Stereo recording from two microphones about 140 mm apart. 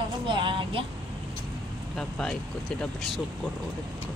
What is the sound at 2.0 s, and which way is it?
Speech, 5° left (ahead or behind).